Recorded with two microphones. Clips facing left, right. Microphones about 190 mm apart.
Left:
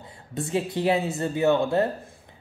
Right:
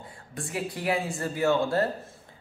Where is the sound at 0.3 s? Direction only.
25° left (ahead or behind).